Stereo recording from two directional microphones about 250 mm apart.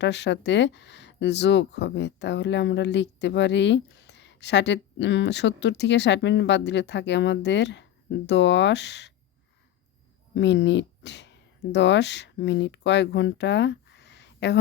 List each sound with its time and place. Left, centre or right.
0.0 s speech: left
10.3 s speech: left